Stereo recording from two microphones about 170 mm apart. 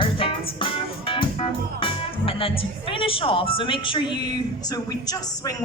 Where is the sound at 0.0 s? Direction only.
30° left (ahead or behind).